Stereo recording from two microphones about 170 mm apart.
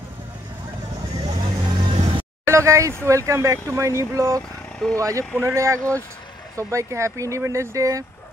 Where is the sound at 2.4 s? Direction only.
15° right (ahead or behind).